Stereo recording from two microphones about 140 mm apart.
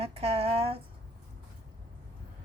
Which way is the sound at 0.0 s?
45° right (ahead or behind).